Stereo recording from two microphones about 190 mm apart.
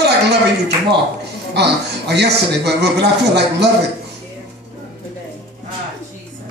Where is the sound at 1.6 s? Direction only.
65° right (ahead or behind).